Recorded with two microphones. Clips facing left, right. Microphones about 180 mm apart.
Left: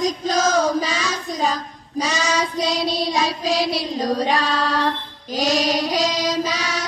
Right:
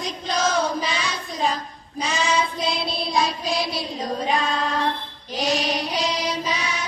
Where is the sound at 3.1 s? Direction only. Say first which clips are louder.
Left 2 dB; 90° left.